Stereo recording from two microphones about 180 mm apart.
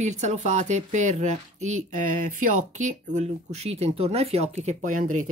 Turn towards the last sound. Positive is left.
turn(degrees=-45)  # may be behind; listen again after turning